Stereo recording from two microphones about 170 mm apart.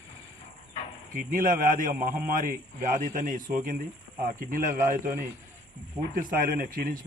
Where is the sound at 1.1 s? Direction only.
55° right (ahead or behind).